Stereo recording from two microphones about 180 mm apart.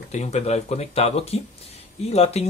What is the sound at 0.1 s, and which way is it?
Speech, 35° left (ahead or behind).